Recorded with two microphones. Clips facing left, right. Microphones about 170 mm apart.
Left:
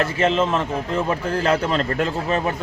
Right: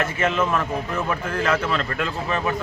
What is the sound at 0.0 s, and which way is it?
A man's voice, 30° left (ahead or behind).